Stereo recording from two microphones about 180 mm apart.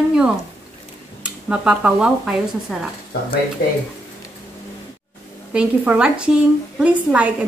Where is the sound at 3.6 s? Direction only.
65° left (ahead or behind).